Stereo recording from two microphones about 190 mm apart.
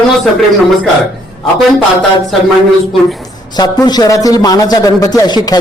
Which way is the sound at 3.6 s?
20° left (ahead or behind).